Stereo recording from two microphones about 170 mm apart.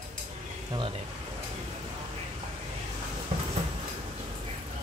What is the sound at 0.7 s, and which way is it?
Speech, 30° right (ahead or behind).